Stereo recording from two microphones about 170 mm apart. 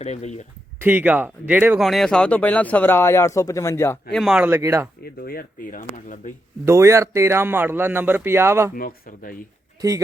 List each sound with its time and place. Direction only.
0.0 s speech: 40° left (ahead or behind)
0.8 s a man's voice: 10° right (ahead or behind)
1.8 s speech: centre (ahead or behind)
4.1 s a man's voice: centre (ahead or behind)
5.0 s speech: 65° left (ahead or behind)
6.7 s a man's voice: 15° right (ahead or behind)
8.7 s speech: 55° left (ahead or behind)